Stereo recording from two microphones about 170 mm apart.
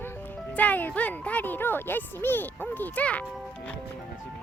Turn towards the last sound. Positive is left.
turn(degrees=5)  # may be behind; listen again after turning